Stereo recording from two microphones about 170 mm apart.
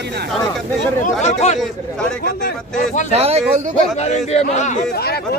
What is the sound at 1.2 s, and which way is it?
Speech, 40° left (ahead or behind).